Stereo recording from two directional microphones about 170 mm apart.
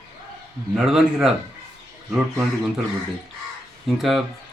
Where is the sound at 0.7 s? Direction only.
5° right (ahead or behind).